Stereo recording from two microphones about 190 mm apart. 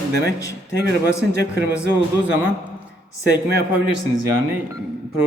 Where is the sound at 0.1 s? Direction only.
55° right (ahead or behind).